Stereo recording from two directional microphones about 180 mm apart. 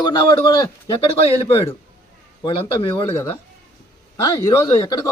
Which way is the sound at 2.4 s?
25° left (ahead or behind).